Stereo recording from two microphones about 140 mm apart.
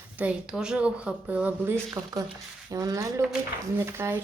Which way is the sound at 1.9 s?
25° right (ahead or behind).